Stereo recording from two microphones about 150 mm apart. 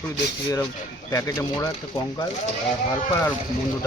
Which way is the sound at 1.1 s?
20° left (ahead or behind).